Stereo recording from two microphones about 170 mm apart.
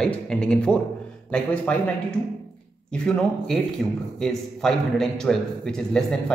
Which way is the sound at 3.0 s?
5° left (ahead or behind).